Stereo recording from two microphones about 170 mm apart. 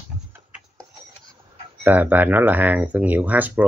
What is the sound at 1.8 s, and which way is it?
Speech, 10° right (ahead or behind).